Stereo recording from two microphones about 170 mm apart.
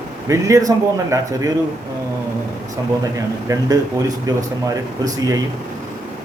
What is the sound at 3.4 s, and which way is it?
Speech, 20° right (ahead or behind).